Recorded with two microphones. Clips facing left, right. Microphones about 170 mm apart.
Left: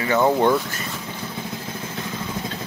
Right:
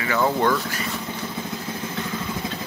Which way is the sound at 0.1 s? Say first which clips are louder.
Left 3 dB; 20° left (ahead or behind).